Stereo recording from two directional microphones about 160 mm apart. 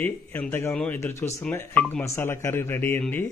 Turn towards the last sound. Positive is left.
turn(degrees=10)  # may be behind; listen again after turning